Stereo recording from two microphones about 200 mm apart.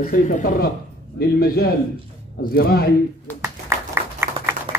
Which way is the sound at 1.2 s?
50° left (ahead or behind).